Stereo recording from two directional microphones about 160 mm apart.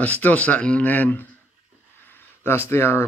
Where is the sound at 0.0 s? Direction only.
10° left (ahead or behind).